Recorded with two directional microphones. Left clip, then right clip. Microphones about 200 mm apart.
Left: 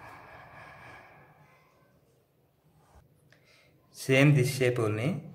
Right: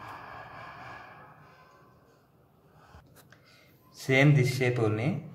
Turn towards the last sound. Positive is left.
turn(degrees=25)  # may be behind; listen again after turning